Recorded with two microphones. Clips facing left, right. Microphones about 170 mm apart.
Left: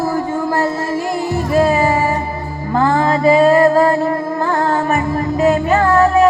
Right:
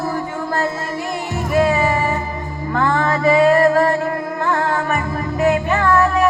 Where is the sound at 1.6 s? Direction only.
35° left (ahead or behind).